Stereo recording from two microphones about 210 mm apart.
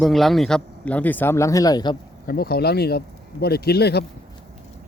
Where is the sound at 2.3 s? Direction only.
45° left (ahead or behind).